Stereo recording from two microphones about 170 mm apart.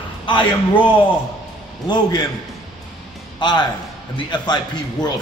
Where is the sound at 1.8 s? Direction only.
25° left (ahead or behind).